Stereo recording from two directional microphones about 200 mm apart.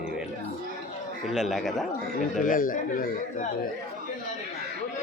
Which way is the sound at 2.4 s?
45° left (ahead or behind).